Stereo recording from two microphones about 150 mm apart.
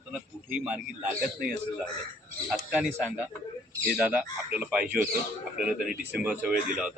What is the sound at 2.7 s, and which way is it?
A man's voice, 5° right (ahead or behind).